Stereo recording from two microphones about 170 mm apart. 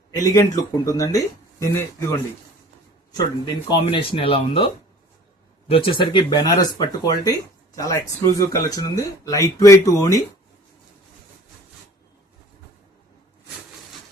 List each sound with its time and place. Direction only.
0.2 s speech: 20° left (ahead or behind)